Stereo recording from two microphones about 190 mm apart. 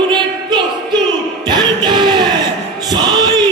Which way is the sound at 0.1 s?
25° right (ahead or behind).